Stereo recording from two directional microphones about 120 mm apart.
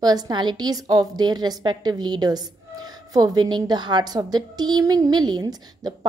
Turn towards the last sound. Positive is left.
turn(degrees=-35)  # may be behind; listen again after turning